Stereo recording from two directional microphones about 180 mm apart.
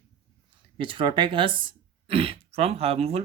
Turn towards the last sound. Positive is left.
turn(degrees=-35)  # may be behind; listen again after turning